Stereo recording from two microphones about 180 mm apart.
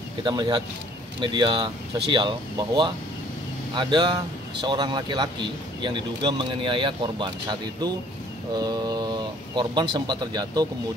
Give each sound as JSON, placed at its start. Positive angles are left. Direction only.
{"t": 0.2, "sound": "speech", "side_deg": -25}